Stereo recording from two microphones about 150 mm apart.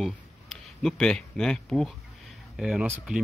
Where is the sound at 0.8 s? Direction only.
5° left (ahead or behind).